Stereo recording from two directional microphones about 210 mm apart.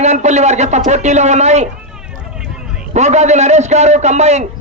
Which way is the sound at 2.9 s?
35° right (ahead or behind).